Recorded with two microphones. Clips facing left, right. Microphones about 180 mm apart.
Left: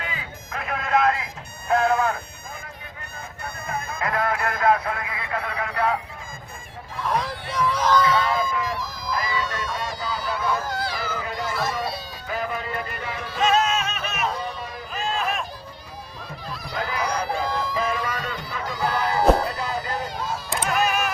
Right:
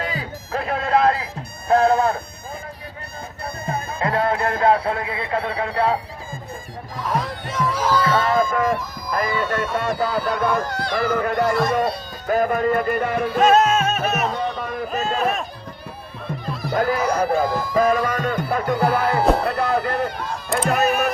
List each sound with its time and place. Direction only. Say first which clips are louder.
0.0 s music: right 7 dB; 35° right (ahead or behind)
3.4 s music: right 4 dB; 35° right (ahead or behind)
7.0 s speech: right 1 dB; centre (ahead or behind)
8.0 s speech: right 3 dB; 50° right (ahead or behind)
10.7 s speech: right 1 dB; centre (ahead or behind)
10.9 s speech: right 9 dB; 60° right (ahead or behind)
14.6 s a sound: right 6 dB; 55° right (ahead or behind)
16.7 s speech: right 7 dB; 50° right (ahead or behind)
17.7 s music: right 8 dB; 50° right (ahead or behind)
19.4 s a sound: right 6 dB; 60° right (ahead or behind)
20.5 s music: right 5 dB; 60° right (ahead or behind)